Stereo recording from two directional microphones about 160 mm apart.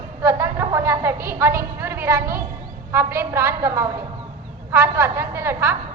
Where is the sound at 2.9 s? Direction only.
15° right (ahead or behind).